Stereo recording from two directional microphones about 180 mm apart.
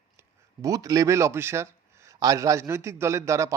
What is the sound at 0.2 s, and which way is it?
Speech, 20° right (ahead or behind).